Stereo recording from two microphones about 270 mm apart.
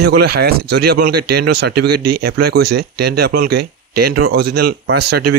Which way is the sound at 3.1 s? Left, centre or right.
Right.